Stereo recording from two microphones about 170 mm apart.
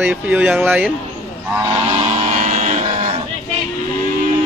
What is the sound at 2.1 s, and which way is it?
Music, 45° right (ahead or behind).